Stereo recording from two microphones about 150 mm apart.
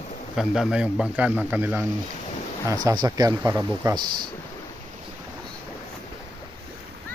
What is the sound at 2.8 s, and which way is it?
Speech, 25° right (ahead or behind).